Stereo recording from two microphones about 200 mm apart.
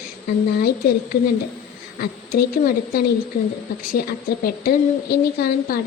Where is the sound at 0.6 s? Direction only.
50° left (ahead or behind).